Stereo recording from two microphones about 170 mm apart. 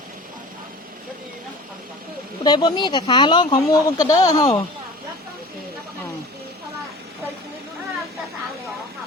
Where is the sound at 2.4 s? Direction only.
25° left (ahead or behind).